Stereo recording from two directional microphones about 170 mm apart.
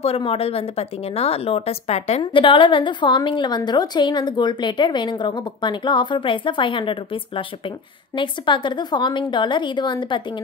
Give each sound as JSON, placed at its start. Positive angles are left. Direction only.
{"t": 0.0, "sound": "speech", "side_deg": 35}